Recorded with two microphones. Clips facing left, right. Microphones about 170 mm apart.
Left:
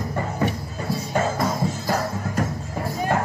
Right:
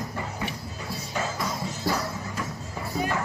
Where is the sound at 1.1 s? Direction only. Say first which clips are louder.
Left 7 dB; 50° left (ahead or behind).